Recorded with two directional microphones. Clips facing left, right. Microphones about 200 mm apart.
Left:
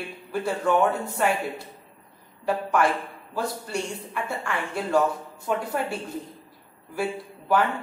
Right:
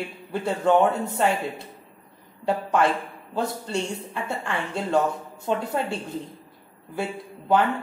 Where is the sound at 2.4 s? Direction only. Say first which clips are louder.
Right 1 dB; 25° right (ahead or behind).